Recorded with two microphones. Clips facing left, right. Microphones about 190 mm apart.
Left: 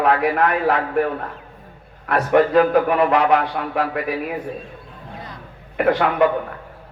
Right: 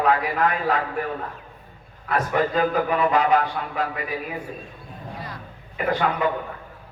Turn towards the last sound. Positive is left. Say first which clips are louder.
# left 6 dB
turn(degrees=65)  # may be behind; listen again after turning